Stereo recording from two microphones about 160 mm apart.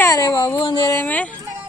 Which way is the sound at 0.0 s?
20° left (ahead or behind).